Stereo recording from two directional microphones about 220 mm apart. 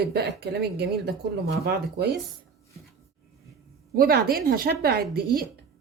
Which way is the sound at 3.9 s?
45° right (ahead or behind).